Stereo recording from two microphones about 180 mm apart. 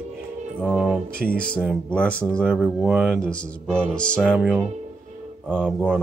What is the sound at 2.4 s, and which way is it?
Music, centre (ahead or behind).